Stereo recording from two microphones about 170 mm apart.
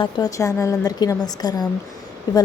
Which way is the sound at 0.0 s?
20° left (ahead or behind).